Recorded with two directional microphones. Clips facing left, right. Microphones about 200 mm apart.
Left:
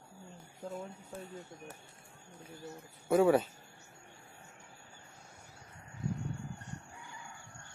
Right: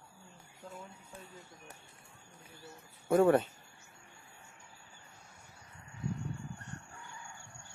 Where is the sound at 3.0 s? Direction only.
Centre (ahead or behind).